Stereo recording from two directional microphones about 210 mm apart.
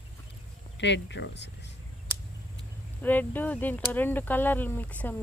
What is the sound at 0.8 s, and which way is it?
Speech, 55° left (ahead or behind).